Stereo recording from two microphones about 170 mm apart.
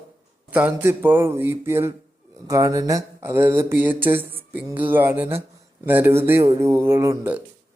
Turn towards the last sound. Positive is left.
turn(degrees=-10)  # may be behind; listen again after turning